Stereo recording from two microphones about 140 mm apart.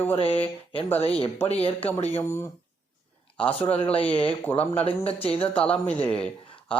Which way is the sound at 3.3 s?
10° left (ahead or behind).